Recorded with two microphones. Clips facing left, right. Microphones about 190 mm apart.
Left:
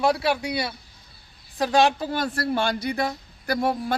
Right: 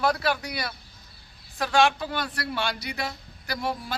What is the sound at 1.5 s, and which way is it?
A man's voice, 35° left (ahead or behind).